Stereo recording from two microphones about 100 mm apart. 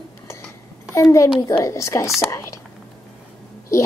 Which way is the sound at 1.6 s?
30° left (ahead or behind).